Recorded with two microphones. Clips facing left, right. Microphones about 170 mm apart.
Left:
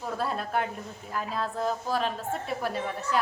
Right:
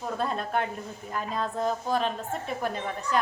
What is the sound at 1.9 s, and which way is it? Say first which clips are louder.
A woman's voice: right 1 dB; 5° left (ahead or behind).